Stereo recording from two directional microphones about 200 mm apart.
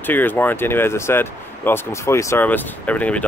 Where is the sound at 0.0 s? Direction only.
10° left (ahead or behind).